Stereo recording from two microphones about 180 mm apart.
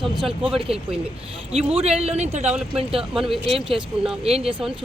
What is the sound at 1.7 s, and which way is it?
Speech, 35° right (ahead or behind).